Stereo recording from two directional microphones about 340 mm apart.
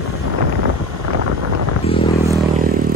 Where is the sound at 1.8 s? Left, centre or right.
Centre.